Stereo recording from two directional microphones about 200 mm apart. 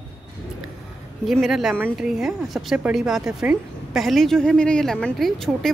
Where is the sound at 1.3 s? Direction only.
Centre (ahead or behind).